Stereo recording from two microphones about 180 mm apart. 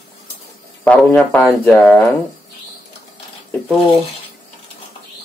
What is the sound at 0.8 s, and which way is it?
Speech, 5° left (ahead or behind).